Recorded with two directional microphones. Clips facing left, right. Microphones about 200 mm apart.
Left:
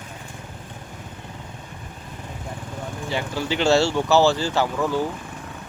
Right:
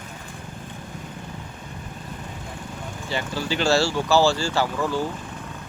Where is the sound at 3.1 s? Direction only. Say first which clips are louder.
Left 1 dB; 15° left (ahead or behind).